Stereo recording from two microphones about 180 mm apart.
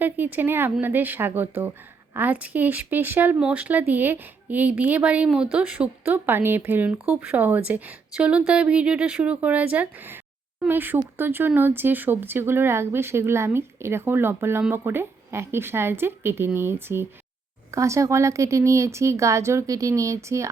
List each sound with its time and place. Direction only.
0.0 s speech: 10° right (ahead or behind)